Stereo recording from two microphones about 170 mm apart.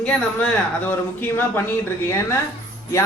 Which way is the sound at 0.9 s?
10° left (ahead or behind).